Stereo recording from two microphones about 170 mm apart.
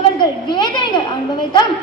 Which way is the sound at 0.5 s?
25° left (ahead or behind).